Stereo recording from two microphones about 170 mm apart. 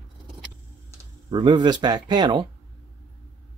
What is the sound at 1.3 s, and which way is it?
Speech, 25° right (ahead or behind).